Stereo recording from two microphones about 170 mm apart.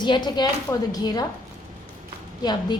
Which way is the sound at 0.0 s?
25° left (ahead or behind).